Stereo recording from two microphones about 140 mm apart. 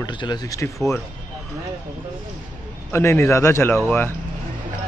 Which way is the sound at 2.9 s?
20° left (ahead or behind).